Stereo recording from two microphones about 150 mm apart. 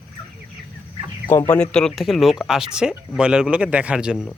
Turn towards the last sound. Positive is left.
turn(degrees=-5)  # may be behind; listen again after turning